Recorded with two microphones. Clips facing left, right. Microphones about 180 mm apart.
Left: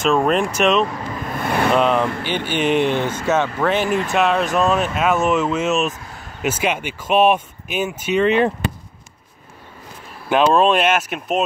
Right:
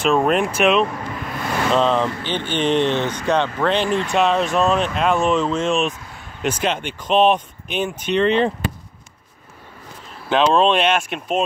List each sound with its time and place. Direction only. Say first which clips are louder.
0.0 s speech: even; centre (ahead or behind)
1.3 s vehicle: left 2 dB; 55° left (ahead or behind)
1.8 s speech: left 1 dB; 10° left (ahead or behind)
10.3 s speech: left 1 dB; 5° left (ahead or behind)